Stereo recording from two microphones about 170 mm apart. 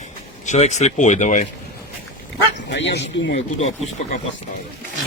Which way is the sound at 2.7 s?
90° left.